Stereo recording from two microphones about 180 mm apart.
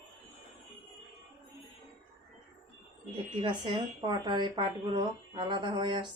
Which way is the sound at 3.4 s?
25° right (ahead or behind).